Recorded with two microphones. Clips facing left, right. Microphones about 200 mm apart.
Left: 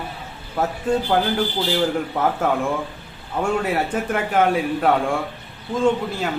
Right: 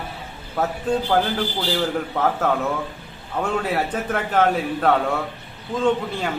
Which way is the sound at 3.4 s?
5° left (ahead or behind).